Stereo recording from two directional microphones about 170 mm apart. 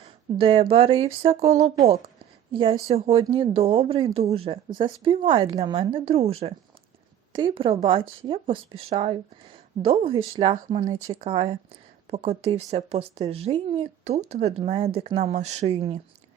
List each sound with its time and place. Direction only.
0.0 s a woman's voice: 30° right (ahead or behind)